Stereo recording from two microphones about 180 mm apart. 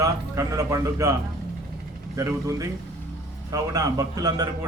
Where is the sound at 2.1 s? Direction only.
20° right (ahead or behind).